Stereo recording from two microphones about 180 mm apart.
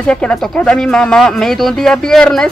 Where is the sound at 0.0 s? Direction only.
5° left (ahead or behind).